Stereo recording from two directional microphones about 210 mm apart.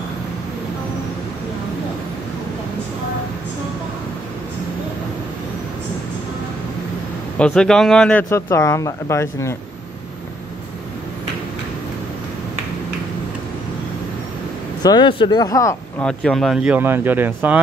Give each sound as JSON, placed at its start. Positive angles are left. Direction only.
{"t": 7.3, "sound": "speech", "side_deg": 5}
{"t": 14.8, "sound": "speech", "side_deg": 20}
{"t": 16.0, "sound": "speech", "side_deg": 5}